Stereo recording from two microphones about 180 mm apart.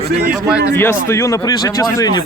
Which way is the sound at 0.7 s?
15° left (ahead or behind).